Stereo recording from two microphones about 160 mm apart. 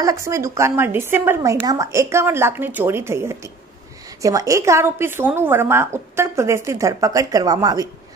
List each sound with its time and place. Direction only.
0.0 s a woman's voice: 20° right (ahead or behind)